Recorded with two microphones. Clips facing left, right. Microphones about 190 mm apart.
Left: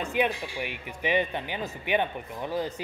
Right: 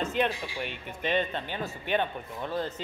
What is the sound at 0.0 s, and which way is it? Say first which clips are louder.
Speech: left 1 dB; 10° left (ahead or behind).